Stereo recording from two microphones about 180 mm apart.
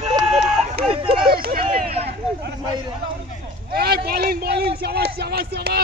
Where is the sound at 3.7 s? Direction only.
60° right (ahead or behind).